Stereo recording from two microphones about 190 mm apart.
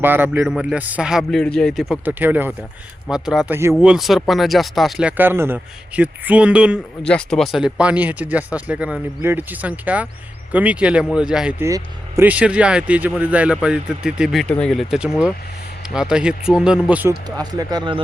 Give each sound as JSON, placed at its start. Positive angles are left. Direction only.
{"t": 0.0, "sound": "speech", "side_deg": -10}
{"t": 11.6, "sound": "speech", "side_deg": -15}
{"t": 17.2, "sound": "speech", "side_deg": -20}